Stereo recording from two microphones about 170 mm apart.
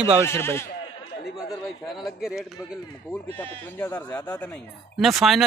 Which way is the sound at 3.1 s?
10° left (ahead or behind).